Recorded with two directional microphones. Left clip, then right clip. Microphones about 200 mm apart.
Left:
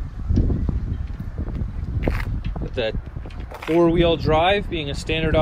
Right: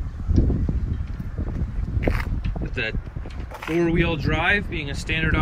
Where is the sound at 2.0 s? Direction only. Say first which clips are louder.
Right 1 dB; centre (ahead or behind).